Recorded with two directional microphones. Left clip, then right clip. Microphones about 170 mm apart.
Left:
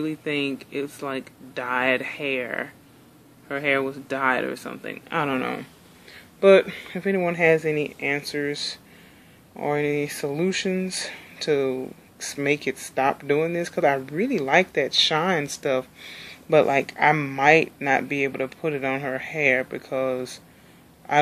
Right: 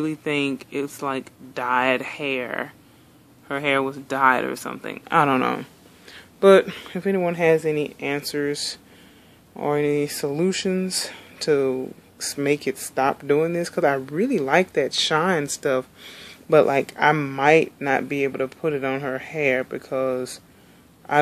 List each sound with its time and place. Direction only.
0.0 s speech: 25° right (ahead or behind)